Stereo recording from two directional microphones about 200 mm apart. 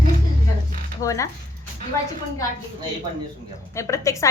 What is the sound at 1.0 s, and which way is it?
Speech, 15° left (ahead or behind).